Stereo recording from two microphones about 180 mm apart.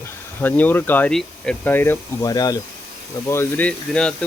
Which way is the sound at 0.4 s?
10° left (ahead or behind).